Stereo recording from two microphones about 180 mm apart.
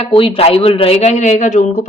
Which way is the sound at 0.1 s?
30° left (ahead or behind).